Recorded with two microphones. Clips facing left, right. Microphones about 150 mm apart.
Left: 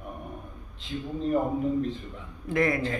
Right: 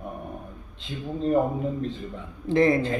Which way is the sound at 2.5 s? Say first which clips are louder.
Right 5 dB; 25° right (ahead or behind).